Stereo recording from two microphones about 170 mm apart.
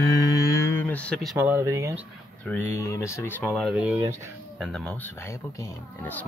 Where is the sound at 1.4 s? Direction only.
15° right (ahead or behind).